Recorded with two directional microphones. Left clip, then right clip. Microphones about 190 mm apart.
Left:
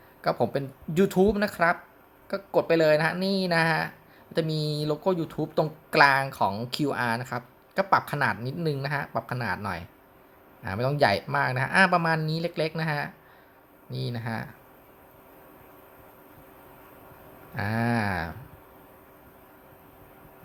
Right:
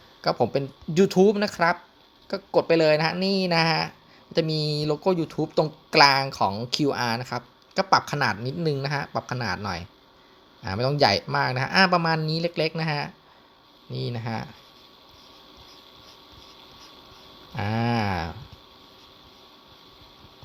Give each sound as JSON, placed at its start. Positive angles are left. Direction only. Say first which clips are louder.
{"t": 0.2, "sound": "speech", "louder": "right 3 dB", "side_deg": -30}
{"t": 14.1, "sound": "speech", "louder": "even", "side_deg": -35}
{"t": 17.5, "sound": "speech", "louder": "right 1 dB", "side_deg": -35}